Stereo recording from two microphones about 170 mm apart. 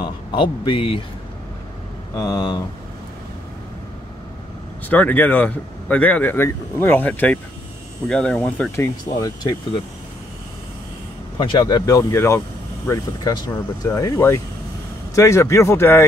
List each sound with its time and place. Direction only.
0.0 s speech: 30° left (ahead or behind)
2.1 s speech: 20° left (ahead or behind)
4.8 s speech: 10° left (ahead or behind)
9.2 s speech: 25° left (ahead or behind)
11.3 s speech: 30° left (ahead or behind)